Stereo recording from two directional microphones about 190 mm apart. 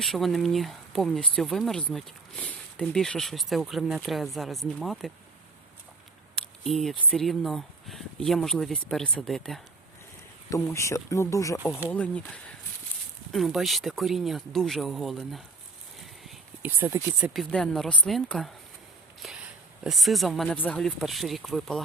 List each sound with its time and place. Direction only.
0.0 s speech: centre (ahead or behind)
6.3 s speech: centre (ahead or behind)
10.5 s speech: 15° left (ahead or behind)
11.6 s speech: 10° right (ahead or behind)
11.9 s speech: 5° left (ahead or behind)
16.0 s a sound: centre (ahead or behind)
16.8 s speech: 15° right (ahead or behind)
17.5 s speech: 5° left (ahead or behind)
19.2 s a sound: centre (ahead or behind)
19.8 s speech: centre (ahead or behind)